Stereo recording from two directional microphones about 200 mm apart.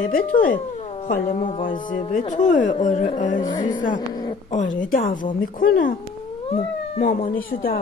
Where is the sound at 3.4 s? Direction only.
20° left (ahead or behind).